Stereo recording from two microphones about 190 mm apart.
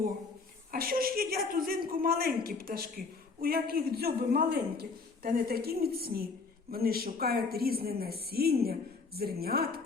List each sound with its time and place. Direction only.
0.7 s a woman's voice: 50° right (ahead or behind)